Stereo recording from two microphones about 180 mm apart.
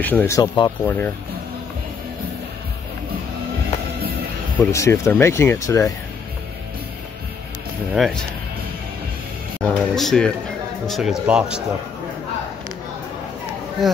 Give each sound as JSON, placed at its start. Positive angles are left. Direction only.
{"t": 0.0, "sound": "speech", "side_deg": 10}
{"t": 0.4, "sound": "speech", "side_deg": 25}
{"t": 0.8, "sound": "speech", "side_deg": 10}
{"t": 4.6, "sound": "speech", "side_deg": 15}
{"t": 7.9, "sound": "speech", "side_deg": 0}
{"t": 9.6, "sound": "speech", "side_deg": 5}